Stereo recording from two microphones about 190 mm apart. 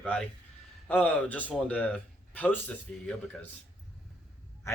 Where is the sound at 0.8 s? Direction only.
10° left (ahead or behind).